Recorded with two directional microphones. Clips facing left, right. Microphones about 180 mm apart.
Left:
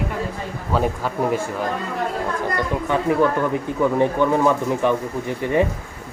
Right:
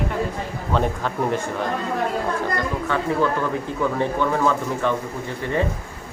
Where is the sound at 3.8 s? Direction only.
15° left (ahead or behind).